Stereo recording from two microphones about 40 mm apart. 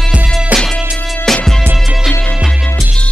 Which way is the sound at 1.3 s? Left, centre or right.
Centre.